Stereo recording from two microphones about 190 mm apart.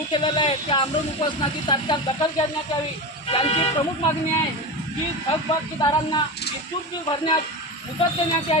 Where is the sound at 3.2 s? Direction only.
30° left (ahead or behind).